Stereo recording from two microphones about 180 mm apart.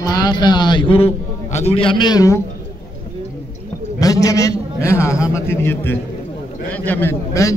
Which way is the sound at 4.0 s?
20° left (ahead or behind).